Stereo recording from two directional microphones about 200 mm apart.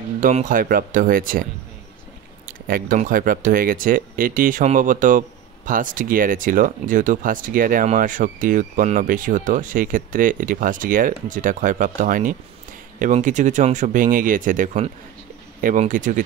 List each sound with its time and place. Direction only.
0.2 s speech: 40° right (ahead or behind)